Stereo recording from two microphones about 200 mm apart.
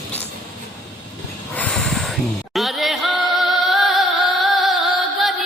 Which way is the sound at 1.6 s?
5° left (ahead or behind).